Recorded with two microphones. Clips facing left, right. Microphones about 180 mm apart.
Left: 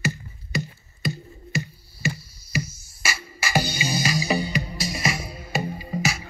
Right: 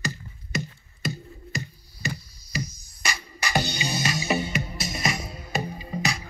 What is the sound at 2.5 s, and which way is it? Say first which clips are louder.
Music: left 3 dB; 5° left (ahead or behind).